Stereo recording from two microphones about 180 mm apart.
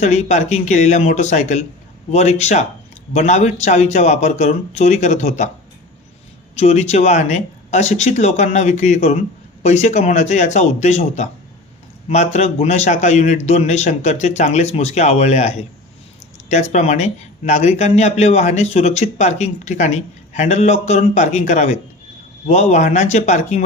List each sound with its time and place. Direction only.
0.0 s speech: 40° left (ahead or behind)
6.6 s speech: 40° left (ahead or behind)